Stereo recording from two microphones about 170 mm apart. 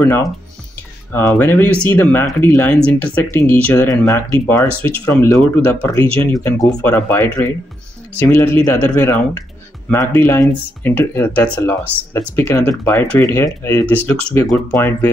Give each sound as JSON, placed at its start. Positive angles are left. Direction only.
{"t": 0.0, "sound": "speech", "side_deg": 15}